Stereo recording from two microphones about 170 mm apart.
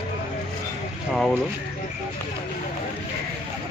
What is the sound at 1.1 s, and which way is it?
Speech, centre (ahead or behind).